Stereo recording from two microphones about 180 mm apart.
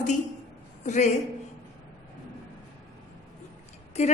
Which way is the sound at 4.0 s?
40° left (ahead or behind).